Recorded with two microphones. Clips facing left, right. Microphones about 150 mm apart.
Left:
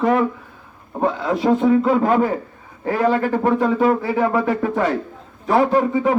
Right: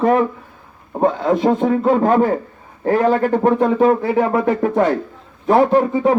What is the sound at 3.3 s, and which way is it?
Speech, 20° right (ahead or behind).